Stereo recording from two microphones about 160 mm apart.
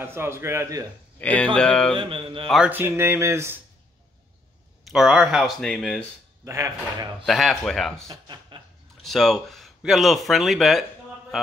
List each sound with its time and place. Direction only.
0.0 s speech: 15° right (ahead or behind)
1.2 s speech: 5° left (ahead or behind)
2.0 s mantra: 35° right (ahead or behind)
2.4 s speech: centre (ahead or behind)
2.7 s speech: 15° right (ahead or behind)
4.8 s speech: 5° right (ahead or behind)
6.4 s speech: 20° right (ahead or behind)
7.2 s speech: centre (ahead or behind)
8.1 s speech: 30° right (ahead or behind)
9.0 s speech: centre (ahead or behind)